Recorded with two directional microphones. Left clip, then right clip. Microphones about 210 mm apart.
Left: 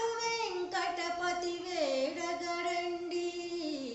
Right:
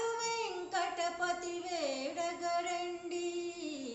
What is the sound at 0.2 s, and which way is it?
Child singing, 15° right (ahead or behind).